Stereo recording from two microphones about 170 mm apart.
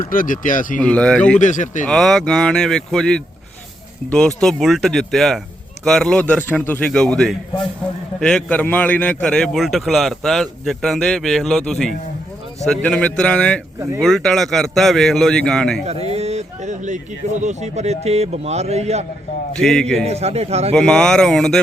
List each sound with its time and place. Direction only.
0.1 s speech: 55° left (ahead or behind)
0.8 s a man's voice: 5° left (ahead or behind)
1.4 s speech: 45° left (ahead or behind)
1.9 s a man's voice: centre (ahead or behind)
15.8 s a man's voice: 40° right (ahead or behind)
19.5 s a man's voice: 5° left (ahead or behind)
20.1 s a man's voice: 40° right (ahead or behind)
20.7 s a man's voice: 5° left (ahead or behind)